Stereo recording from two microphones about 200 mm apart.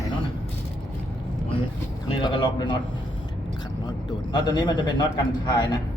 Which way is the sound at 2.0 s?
25° left (ahead or behind).